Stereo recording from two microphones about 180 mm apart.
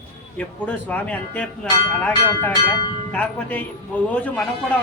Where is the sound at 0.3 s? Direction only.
5° left (ahead or behind).